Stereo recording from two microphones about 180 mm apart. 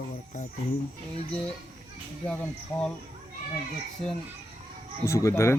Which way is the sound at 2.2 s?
5° left (ahead or behind).